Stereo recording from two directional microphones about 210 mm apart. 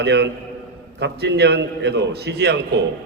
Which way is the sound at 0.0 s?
55° right (ahead or behind).